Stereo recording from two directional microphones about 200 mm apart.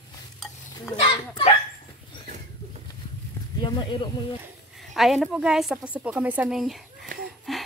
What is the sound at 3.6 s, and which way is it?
Speech, 25° left (ahead or behind).